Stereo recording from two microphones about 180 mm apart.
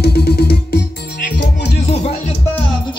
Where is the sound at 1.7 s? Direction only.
35° left (ahead or behind).